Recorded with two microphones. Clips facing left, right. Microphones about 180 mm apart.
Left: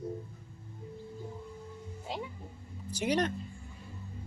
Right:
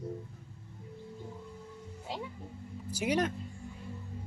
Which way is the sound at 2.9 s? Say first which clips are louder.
Even; 5° right (ahead or behind).